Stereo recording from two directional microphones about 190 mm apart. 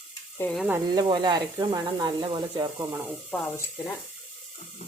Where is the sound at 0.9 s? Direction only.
25° right (ahead or behind).